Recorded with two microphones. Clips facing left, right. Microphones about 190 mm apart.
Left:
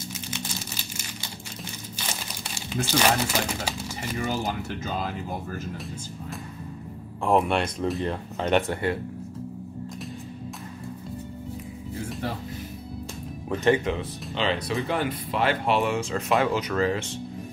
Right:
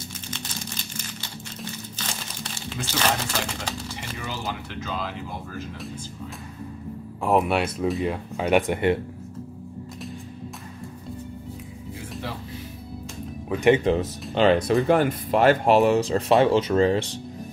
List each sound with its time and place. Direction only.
2.0 s crumpling: 10° left (ahead or behind)
4.2 s speech: 45° left (ahead or behind)
7.2 s speech: 5° right (ahead or behind)
13.5 s speech: 15° right (ahead or behind)
14.3 s speech: 50° right (ahead or behind); by 17.2 s 30° right (ahead or behind)